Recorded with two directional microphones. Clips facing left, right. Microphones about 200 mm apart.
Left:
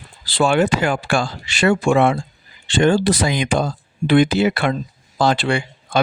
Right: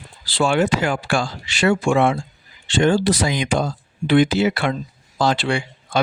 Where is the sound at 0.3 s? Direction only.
55° left (ahead or behind).